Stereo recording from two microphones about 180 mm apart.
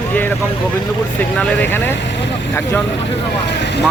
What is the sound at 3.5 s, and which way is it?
Speech, 70° left (ahead or behind).